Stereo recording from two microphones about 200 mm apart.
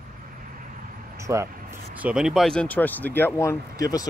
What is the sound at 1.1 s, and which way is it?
Speech, 15° right (ahead or behind).